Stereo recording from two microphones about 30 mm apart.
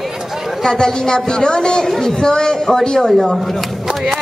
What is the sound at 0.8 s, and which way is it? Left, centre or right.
A woman's voice, left.